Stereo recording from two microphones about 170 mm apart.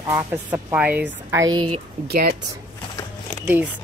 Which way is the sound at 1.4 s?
25° right (ahead or behind).